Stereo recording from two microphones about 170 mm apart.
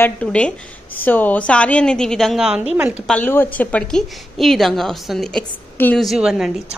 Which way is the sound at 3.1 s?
10° left (ahead or behind).